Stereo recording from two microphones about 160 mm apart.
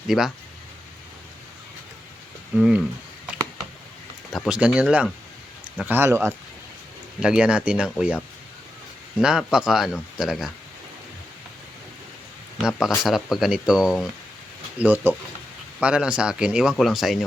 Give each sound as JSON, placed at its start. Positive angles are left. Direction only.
{"t": 0.1, "sound": "speech", "side_deg": 0}
{"t": 2.6, "sound": "speech", "side_deg": -5}
{"t": 4.3, "sound": "speech", "side_deg": -5}
{"t": 7.2, "sound": "speech", "side_deg": -5}
{"t": 9.1, "sound": "speech", "side_deg": -5}
{"t": 12.5, "sound": "speech", "side_deg": 0}